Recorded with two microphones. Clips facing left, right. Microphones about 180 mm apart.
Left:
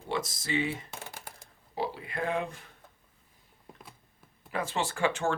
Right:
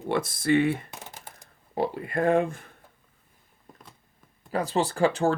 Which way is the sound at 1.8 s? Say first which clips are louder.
Right 7 dB; 55° right (ahead or behind).